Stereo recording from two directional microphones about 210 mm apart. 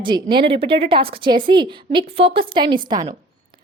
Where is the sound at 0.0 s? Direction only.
20° right (ahead or behind).